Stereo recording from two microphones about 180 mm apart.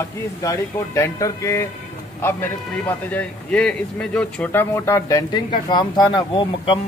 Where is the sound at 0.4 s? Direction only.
15° left (ahead or behind).